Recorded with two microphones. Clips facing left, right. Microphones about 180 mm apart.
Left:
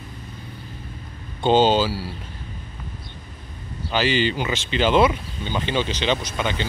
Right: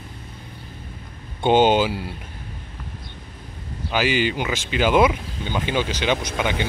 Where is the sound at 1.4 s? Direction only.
15° right (ahead or behind).